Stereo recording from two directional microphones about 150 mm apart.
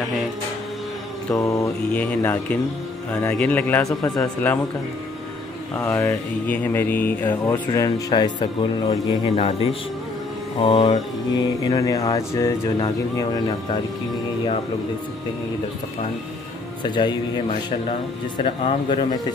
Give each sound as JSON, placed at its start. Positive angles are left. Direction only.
{"t": 1.3, "sound": "speech", "side_deg": 20}
{"t": 1.9, "sound": "mantra", "side_deg": 10}
{"t": 5.8, "sound": "mantra", "side_deg": 15}
{"t": 8.1, "sound": "speech", "side_deg": 30}
{"t": 9.2, "sound": "speech", "side_deg": 40}
{"t": 10.7, "sound": "mantra", "side_deg": 45}
{"t": 11.3, "sound": "speech", "side_deg": 25}
{"t": 16.8, "sound": "speech", "side_deg": 30}
{"t": 18.4, "sound": "speech", "side_deg": 40}